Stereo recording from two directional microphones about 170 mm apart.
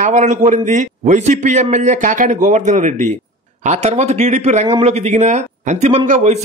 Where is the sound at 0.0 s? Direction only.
45° right (ahead or behind).